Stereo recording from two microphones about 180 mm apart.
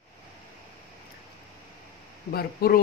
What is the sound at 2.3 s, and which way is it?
Speech, 55° left (ahead or behind).